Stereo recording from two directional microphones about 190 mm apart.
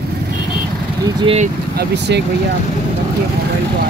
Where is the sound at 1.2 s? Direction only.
30° right (ahead or behind).